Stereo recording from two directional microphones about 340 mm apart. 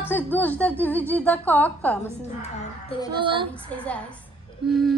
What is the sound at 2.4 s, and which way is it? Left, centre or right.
Music, centre.